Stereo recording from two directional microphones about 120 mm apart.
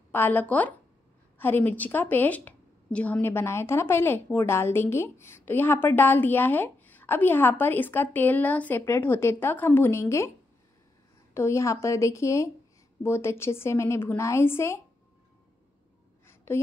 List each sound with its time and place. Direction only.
0.1 s a woman's voice: 15° left (ahead or behind)
11.3 s a woman's voice: 25° left (ahead or behind)
16.3 s a sound: 20° left (ahead or behind)